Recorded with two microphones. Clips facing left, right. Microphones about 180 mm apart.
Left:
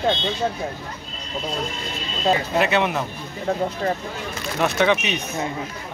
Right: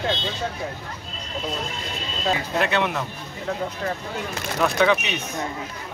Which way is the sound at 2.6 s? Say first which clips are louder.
Left 3 dB; 5° left (ahead or behind).